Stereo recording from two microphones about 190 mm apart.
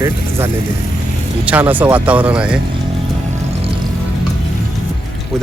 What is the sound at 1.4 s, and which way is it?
Speech, 10° right (ahead or behind).